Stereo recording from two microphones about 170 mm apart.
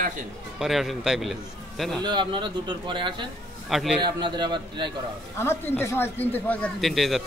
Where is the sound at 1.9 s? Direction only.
25° right (ahead or behind).